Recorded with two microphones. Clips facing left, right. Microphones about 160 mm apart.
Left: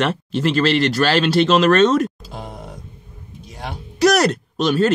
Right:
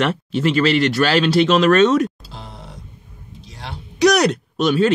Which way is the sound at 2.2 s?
50° left (ahead or behind).